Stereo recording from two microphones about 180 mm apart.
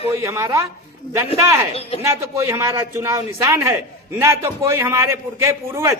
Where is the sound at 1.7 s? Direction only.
35° left (ahead or behind).